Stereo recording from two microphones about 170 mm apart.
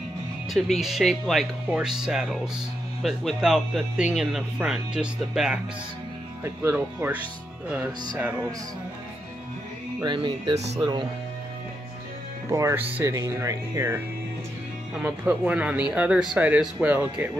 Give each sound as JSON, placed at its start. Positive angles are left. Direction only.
{"t": 0.5, "sound": "speech", "side_deg": 0}
{"t": 10.0, "sound": "speech", "side_deg": -30}
{"t": 12.4, "sound": "speech", "side_deg": -15}